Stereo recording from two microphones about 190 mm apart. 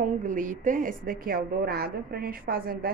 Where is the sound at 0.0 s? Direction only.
45° right (ahead or behind).